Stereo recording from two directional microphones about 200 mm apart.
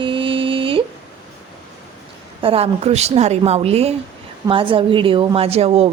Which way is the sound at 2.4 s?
30° right (ahead or behind).